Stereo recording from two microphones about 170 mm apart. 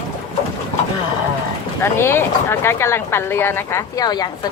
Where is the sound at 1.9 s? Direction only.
15° left (ahead or behind).